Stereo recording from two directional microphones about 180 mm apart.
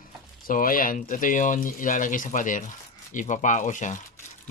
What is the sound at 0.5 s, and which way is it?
Speech, 50° left (ahead or behind).